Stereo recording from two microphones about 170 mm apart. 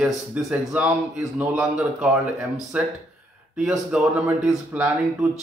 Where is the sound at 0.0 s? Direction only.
5° right (ahead or behind).